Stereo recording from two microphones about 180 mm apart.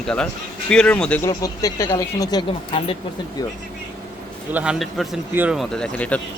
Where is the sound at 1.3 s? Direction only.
20° left (ahead or behind).